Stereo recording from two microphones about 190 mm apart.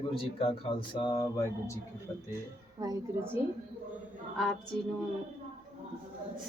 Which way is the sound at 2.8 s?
15° right (ahead or behind).